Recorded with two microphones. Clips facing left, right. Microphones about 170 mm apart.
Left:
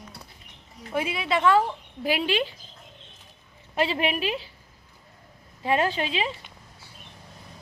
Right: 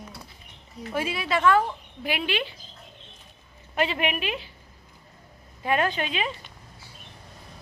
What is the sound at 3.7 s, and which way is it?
Speech, 30° left (ahead or behind).